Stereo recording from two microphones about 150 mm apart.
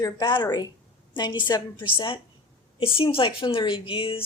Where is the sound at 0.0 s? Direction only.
30° left (ahead or behind).